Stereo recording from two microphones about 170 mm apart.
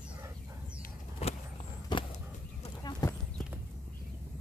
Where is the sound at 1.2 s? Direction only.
35° left (ahead or behind).